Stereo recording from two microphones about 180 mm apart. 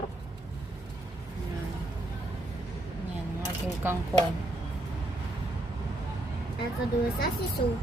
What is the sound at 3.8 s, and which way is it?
Speech, 15° right (ahead or behind).